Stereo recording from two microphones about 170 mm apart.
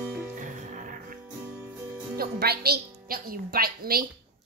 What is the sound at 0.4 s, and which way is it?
Music, 50° right (ahead or behind).